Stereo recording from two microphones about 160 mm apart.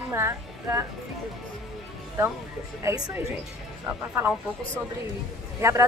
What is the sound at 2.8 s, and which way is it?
Speech, 20° right (ahead or behind).